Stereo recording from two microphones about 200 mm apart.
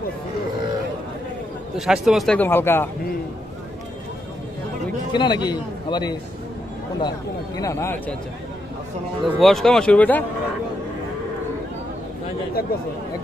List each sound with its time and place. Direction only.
1.8 s speech: centre (ahead or behind)
5.1 s a man's voice: 20° left (ahead or behind)
9.2 s speech: centre (ahead or behind)
12.6 s speech: 50° left (ahead or behind)